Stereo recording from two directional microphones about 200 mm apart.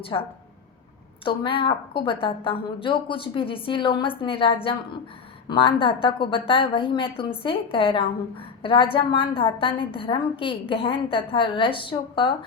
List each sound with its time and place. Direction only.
0.1 s a woman's voice: 20° left (ahead or behind)